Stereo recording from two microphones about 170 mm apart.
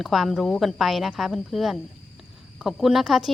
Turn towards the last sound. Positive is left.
turn(degrees=0)  # may be behind; listen again after turning